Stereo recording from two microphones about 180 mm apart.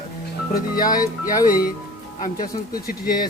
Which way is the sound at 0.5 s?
55° left (ahead or behind).